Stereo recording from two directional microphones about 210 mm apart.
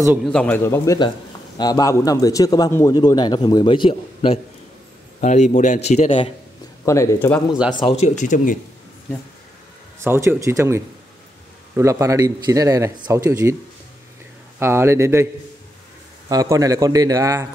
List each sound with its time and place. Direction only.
0.2 s speech: 5° left (ahead or behind); by 4.4 s 25° left (ahead or behind)
5.2 s a man's voice: 35° left (ahead or behind)
6.8 s speech: 15° left (ahead or behind)
7.8 s a man's voice: 30° left (ahead or behind)
9.9 s a man's voice: 10° right (ahead or behind)
14.6 s a man's voice: 10° right (ahead or behind)
16.3 s a man's voice: 15° right (ahead or behind)